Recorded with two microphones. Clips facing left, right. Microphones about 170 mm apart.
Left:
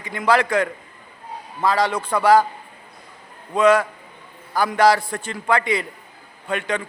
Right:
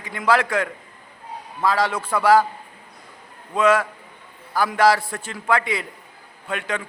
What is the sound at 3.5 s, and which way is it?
A man's voice, centre (ahead or behind).